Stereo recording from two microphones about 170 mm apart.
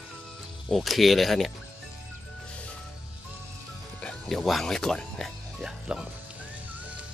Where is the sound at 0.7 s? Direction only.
Centre (ahead or behind).